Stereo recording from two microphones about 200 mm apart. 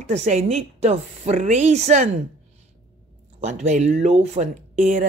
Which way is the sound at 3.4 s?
35° right (ahead or behind).